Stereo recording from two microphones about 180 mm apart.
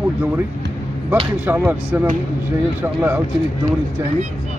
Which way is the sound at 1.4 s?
10° right (ahead or behind).